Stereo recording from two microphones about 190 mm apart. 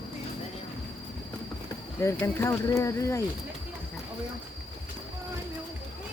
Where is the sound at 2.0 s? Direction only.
15° left (ahead or behind).